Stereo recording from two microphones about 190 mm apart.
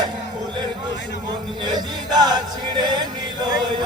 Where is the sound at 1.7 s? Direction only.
20° right (ahead or behind).